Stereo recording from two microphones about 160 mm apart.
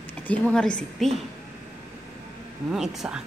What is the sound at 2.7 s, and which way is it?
Speech, centre (ahead or behind).